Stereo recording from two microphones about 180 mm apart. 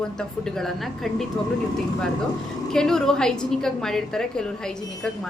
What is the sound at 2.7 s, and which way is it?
A woman's voice, 5° left (ahead or behind).